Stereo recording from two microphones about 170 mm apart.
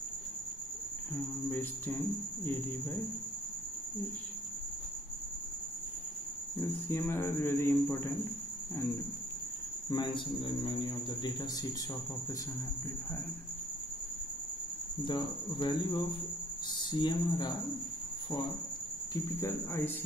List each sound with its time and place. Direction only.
1.5 s speech: 10° left (ahead or behind)
6.6 s speech: 15° left (ahead or behind)
9.8 s a man's voice: 30° left (ahead or behind)
15.0 s a man's voice: 25° left (ahead or behind)
19.1 s speech: 15° left (ahead or behind)